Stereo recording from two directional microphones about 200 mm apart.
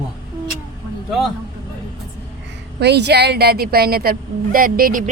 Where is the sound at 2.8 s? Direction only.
55° right (ahead or behind).